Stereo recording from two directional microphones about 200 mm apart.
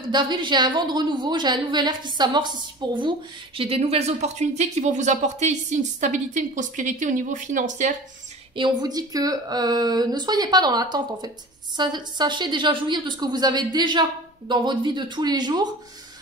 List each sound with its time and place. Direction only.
0.1 s a woman's voice: 20° right (ahead or behind); by 7.9 s 40° right (ahead or behind)
8.5 s speech: 20° right (ahead or behind)